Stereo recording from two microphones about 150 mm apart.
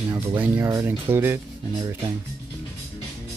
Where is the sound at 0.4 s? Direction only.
20° right (ahead or behind).